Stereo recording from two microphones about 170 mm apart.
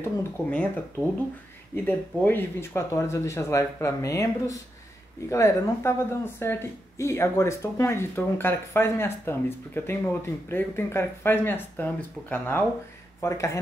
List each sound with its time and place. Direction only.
0.0 s a woman's voice: 10° left (ahead or behind)
1.9 s a woman's voice: 10° left (ahead or behind)